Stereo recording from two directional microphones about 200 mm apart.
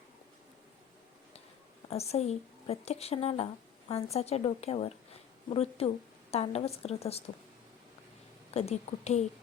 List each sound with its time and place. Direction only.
1.9 s speech: 30° left (ahead or behind)
8.5 s speech: 30° left (ahead or behind)